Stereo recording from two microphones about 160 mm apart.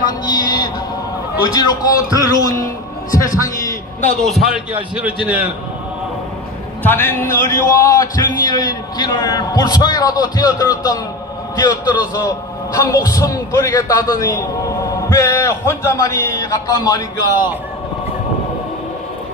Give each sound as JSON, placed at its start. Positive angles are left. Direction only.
{"t": 0.2, "sound": "music", "side_deg": 25}
{"t": 1.4, "sound": "a man's voice", "side_deg": 25}
{"t": 4.2, "sound": "a man's voice", "side_deg": 0}
{"t": 6.8, "sound": "a man's voice", "side_deg": 10}